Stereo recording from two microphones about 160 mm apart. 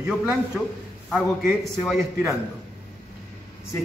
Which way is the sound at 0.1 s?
5° right (ahead or behind).